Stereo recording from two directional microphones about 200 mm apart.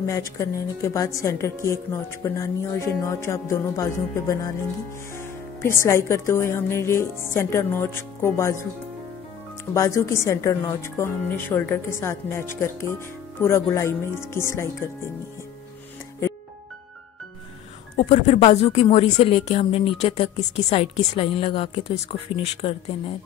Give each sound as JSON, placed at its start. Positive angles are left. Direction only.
{"t": 0.0, "sound": "a woman's voice", "side_deg": 15}
{"t": 9.8, "sound": "a woman's voice", "side_deg": 15}
{"t": 17.9, "sound": "a woman's voice", "side_deg": 35}